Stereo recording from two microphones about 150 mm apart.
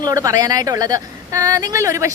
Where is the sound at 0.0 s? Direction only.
25° right (ahead or behind).